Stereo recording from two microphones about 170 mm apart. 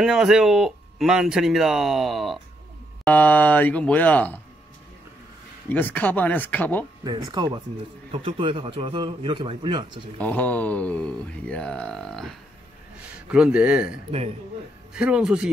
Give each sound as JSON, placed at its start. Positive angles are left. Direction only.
{"t": 0.0, "sound": "speech", "side_deg": 0}
{"t": 5.7, "sound": "speech", "side_deg": 10}
{"t": 7.1, "sound": "a man's voice", "side_deg": -20}
{"t": 10.1, "sound": "speech", "side_deg": 10}
{"t": 15.0, "sound": "speech", "side_deg": -5}